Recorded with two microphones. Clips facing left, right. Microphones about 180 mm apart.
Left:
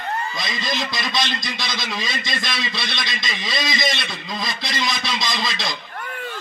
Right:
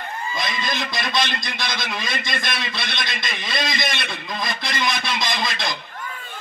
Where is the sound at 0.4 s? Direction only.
55° right (ahead or behind).